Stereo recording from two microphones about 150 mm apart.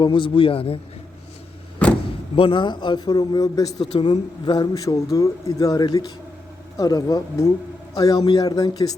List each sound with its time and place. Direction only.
0.0 s a man's voice: 35° left (ahead or behind)
2.0 s a man's voice: 35° left (ahead or behind)
3.9 s a man's voice: 35° left (ahead or behind)